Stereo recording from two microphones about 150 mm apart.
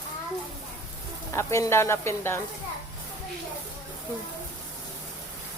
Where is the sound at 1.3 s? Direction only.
20° left (ahead or behind).